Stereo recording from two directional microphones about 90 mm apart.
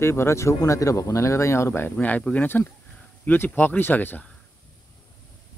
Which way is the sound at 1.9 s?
15° left (ahead or behind).